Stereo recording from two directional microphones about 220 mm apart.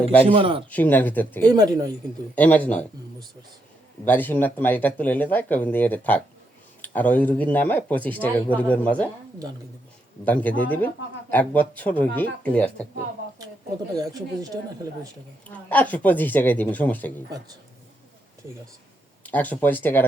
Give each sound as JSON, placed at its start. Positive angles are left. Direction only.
{"t": 0.3, "sound": "speech", "side_deg": -25}
{"t": 0.7, "sound": "speech", "side_deg": 10}
{"t": 1.5, "sound": "speech", "side_deg": -15}
{"t": 2.3, "sound": "speech", "side_deg": 5}
{"t": 4.0, "sound": "speech", "side_deg": 10}
{"t": 10.2, "sound": "speech", "side_deg": 5}
{"t": 13.9, "sound": "speech", "side_deg": -15}
{"t": 15.4, "sound": "speech", "side_deg": 5}
{"t": 19.2, "sound": "speech", "side_deg": 5}